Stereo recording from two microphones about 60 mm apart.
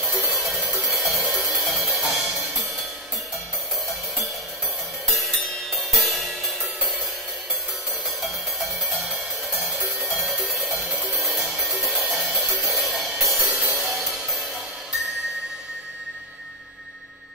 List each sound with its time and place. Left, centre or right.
0.7 s music: centre
5.0 s music: centre
10.5 s music: centre
13.4 s music: right